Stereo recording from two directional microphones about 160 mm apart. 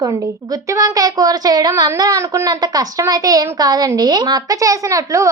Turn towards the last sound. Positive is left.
turn(degrees=-20)  # may be behind; listen again after turning